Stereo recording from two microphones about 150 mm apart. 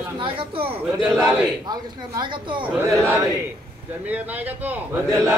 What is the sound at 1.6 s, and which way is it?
Speech, 30° right (ahead or behind).